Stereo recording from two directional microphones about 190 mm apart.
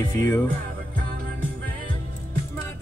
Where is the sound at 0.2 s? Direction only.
10° left (ahead or behind).